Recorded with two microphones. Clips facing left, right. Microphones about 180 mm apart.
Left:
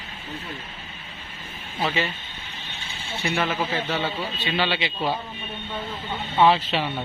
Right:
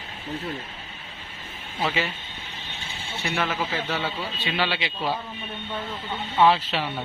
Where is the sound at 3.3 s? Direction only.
5° left (ahead or behind).